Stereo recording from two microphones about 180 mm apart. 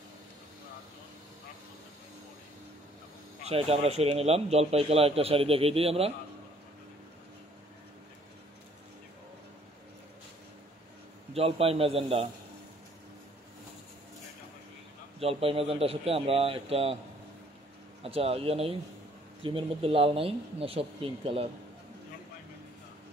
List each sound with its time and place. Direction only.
3.4 s a man's voice: 35° right (ahead or behind)
11.3 s a man's voice: 30° right (ahead or behind)
15.1 s a man's voice: 30° right (ahead or behind)
18.0 s a man's voice: 30° right (ahead or behind)